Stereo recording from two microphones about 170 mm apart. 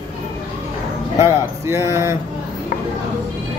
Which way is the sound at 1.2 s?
15° right (ahead or behind).